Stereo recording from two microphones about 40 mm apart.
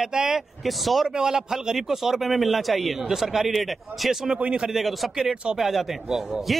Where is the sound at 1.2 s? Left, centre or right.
Centre.